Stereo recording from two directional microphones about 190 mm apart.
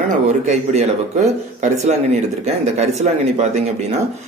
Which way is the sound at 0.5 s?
35° right (ahead or behind).